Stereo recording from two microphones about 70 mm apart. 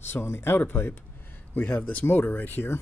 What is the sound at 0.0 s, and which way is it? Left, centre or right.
Speech, left.